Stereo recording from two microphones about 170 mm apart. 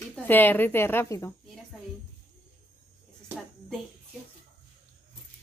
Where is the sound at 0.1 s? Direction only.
10° left (ahead or behind).